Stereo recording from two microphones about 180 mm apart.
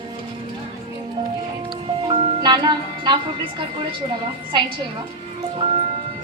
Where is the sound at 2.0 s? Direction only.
25° right (ahead or behind).